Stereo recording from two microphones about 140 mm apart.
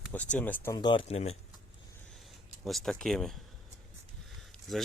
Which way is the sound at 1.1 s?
50° left (ahead or behind).